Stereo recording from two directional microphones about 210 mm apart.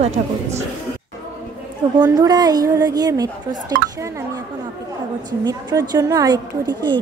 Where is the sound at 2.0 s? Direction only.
20° right (ahead or behind).